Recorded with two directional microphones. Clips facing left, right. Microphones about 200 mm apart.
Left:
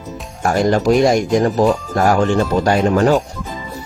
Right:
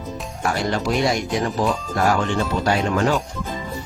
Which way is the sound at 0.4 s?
45° left (ahead or behind).